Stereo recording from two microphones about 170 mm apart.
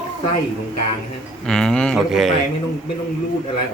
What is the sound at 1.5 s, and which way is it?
Speech, 5° left (ahead or behind).